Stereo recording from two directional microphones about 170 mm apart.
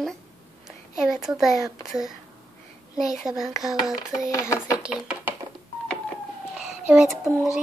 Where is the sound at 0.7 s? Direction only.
Centre (ahead or behind).